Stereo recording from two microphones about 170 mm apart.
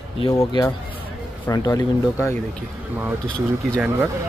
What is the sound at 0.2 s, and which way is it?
Speech, 20° left (ahead or behind).